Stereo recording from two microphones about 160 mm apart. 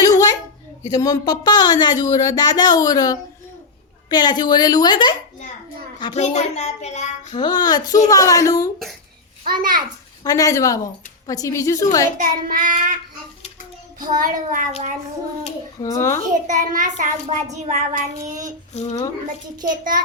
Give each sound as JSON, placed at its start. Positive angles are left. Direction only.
{"t": 0.0, "sound": "a sound", "side_deg": 20}
{"t": 0.9, "sound": "a woman's voice", "side_deg": 25}
{"t": 6.1, "sound": "a child's voice", "side_deg": 45}
{"t": 7.3, "sound": "a woman's voice", "side_deg": 25}
{"t": 9.5, "sound": "child singing", "side_deg": -60}
{"t": 10.2, "sound": "a woman's voice", "side_deg": 20}
{"t": 12.1, "sound": "child singing", "side_deg": -60}
{"t": 14.1, "sound": "child singing", "side_deg": -55}
{"t": 15.8, "sound": "a child's voice", "side_deg": 20}
{"t": 16.5, "sound": "a woman's voice", "side_deg": -55}
{"t": 18.7, "sound": "a child's voice", "side_deg": 45}
{"t": 19.6, "sound": "child singing", "side_deg": -55}